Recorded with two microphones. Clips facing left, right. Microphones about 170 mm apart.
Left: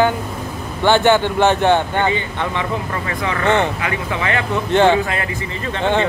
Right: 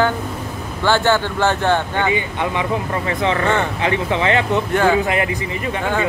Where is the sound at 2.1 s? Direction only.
15° right (ahead or behind).